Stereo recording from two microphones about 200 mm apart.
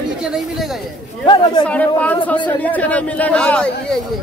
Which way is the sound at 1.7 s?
10° left (ahead or behind).